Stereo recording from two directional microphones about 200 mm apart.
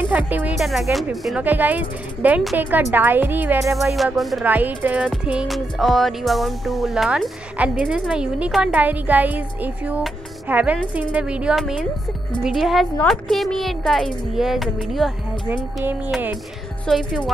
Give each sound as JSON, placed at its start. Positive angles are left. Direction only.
{"t": 0.3, "sound": "music", "side_deg": -10}
{"t": 0.9, "sound": "speech", "side_deg": 0}
{"t": 3.9, "sound": "music", "side_deg": 0}
{"t": 7.8, "sound": "speech", "side_deg": -5}
{"t": 11.0, "sound": "music", "side_deg": -5}
{"t": 15.5, "sound": "speech", "side_deg": -10}
{"t": 16.8, "sound": "music", "side_deg": 0}